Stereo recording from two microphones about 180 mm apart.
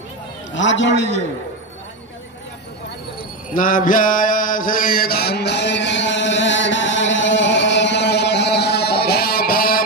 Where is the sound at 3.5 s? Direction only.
50° left (ahead or behind).